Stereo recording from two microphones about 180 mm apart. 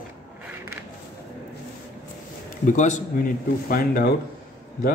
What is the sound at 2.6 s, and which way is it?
A man's voice, 40° left (ahead or behind).